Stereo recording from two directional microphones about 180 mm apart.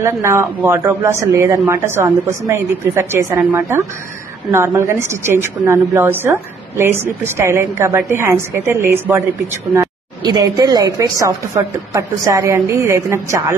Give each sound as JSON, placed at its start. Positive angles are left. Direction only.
{"t": 0.0, "sound": "a woman's voice", "side_deg": -15}